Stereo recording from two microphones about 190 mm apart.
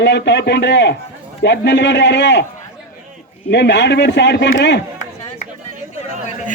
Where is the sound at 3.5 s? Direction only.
65° left (ahead or behind).